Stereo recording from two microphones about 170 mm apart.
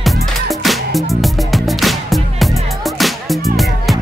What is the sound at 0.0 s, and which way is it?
Music, centre (ahead or behind).